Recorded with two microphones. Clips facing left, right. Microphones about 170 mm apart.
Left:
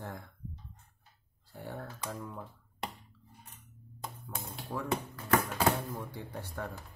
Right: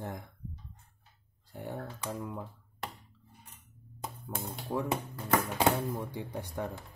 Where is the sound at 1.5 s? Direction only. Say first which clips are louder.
Right 3 dB; 20° right (ahead or behind).